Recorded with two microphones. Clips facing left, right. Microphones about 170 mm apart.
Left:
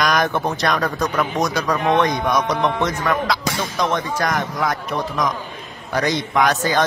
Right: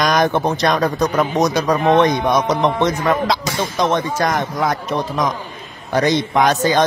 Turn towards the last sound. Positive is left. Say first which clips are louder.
# right 3 dB
turn(degrees=-20)  # may be behind; listen again after turning